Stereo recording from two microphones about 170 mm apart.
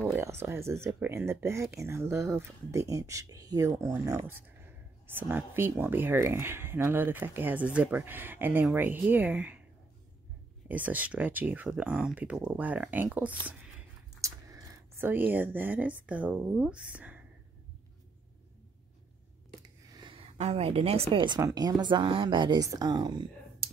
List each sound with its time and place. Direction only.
0.1 s speech: 15° right (ahead or behind)
10.7 s speech: 10° right (ahead or behind)
13.5 s a sound: 15° right (ahead or behind)
16.1 s speech: 10° right (ahead or behind)
19.9 s a woman's voice: 30° right (ahead or behind)
21.4 s a woman's voice: 20° right (ahead or behind)